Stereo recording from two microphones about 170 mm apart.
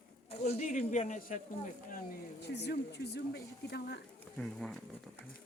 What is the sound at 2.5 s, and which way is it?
Speech, 85° left.